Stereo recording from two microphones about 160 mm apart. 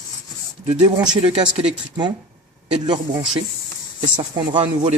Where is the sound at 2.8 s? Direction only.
25° right (ahead or behind).